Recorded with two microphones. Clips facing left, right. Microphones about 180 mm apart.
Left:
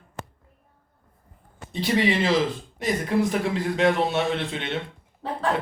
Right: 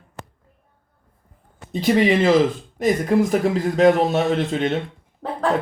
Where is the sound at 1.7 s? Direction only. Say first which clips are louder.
Right 6 dB; 50° right (ahead or behind).